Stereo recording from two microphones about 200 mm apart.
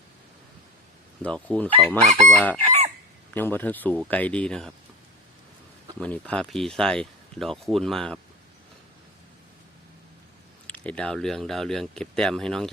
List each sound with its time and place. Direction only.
1.2 s speech: 5° left (ahead or behind)
2.6 s chicken: 35° right (ahead or behind)
3.3 s speech: 10° left (ahead or behind)
6.0 s speech: 5° left (ahead or behind)
10.7 s speech: 5° left (ahead or behind)